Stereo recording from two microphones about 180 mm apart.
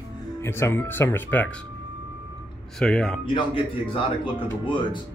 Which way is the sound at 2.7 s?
5° left (ahead or behind).